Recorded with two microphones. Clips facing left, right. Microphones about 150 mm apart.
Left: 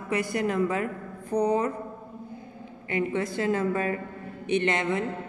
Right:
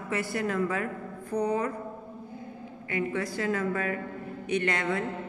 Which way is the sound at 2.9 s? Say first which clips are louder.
Left 3 dB; 25° left (ahead or behind).